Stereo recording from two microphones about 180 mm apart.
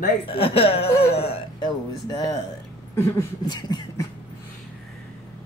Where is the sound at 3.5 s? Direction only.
20° left (ahead or behind).